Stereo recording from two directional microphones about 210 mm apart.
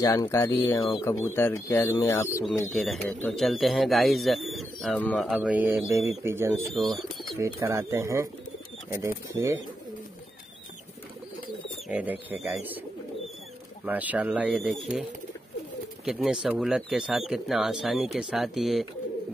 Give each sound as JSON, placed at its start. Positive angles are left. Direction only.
{"t": 0.0, "sound": "speech", "side_deg": 15}
{"t": 2.7, "sound": "speech", "side_deg": 0}
{"t": 5.3, "sound": "speech", "side_deg": -5}
{"t": 6.7, "sound": "speech", "side_deg": 0}
{"t": 7.3, "sound": "speech", "side_deg": -15}
{"t": 11.9, "sound": "speech", "side_deg": -10}
{"t": 13.8, "sound": "speech", "side_deg": -5}
{"t": 16.1, "sound": "speech", "side_deg": -5}